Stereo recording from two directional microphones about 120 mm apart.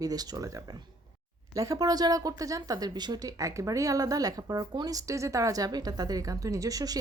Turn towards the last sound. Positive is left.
turn(degrees=-30)  # may be behind; listen again after turning